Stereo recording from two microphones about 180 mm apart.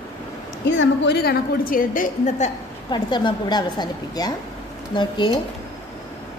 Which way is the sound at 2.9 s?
25° left (ahead or behind).